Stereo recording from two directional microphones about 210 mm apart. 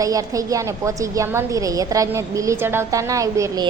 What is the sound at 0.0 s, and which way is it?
A woman's voice, 15° right (ahead or behind).